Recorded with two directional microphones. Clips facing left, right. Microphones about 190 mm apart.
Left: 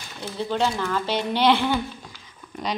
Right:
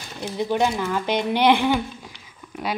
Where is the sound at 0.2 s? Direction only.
15° right (ahead or behind).